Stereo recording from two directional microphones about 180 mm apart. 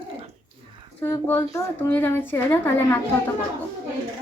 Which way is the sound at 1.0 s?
10° left (ahead or behind).